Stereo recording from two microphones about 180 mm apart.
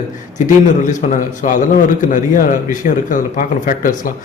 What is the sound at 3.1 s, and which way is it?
A man's voice, 50° left (ahead or behind).